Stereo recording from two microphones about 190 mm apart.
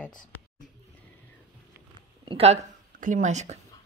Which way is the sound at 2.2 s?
30° right (ahead or behind).